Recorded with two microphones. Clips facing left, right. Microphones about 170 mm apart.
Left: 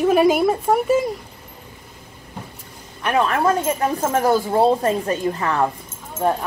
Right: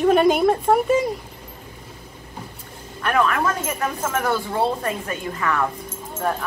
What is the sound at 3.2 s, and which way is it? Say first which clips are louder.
Speech: left 4 dB; 30° left (ahead or behind).